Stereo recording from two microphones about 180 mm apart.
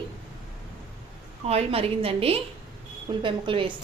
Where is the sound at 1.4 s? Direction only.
35° right (ahead or behind).